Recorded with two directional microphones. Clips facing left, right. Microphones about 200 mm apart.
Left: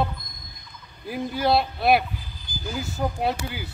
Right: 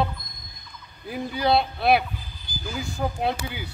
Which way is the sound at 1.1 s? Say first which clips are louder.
Even; centre (ahead or behind).